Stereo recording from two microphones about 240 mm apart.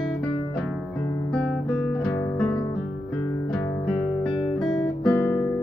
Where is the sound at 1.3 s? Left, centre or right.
Centre.